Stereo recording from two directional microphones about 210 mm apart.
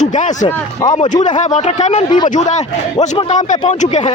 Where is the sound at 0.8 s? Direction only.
20° left (ahead or behind).